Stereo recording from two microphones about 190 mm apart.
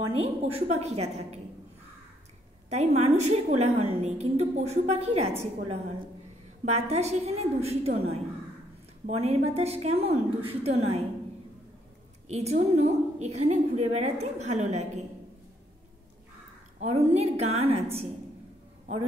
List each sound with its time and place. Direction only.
0.2 s a woman's voice: 35° right (ahead or behind)
2.7 s a woman's voice: 35° right (ahead or behind)
12.3 s a woman's voice: 35° right (ahead or behind)
16.8 s a woman's voice: 35° right (ahead or behind)